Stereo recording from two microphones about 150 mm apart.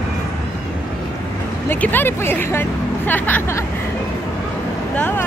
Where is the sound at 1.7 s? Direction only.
10° left (ahead or behind).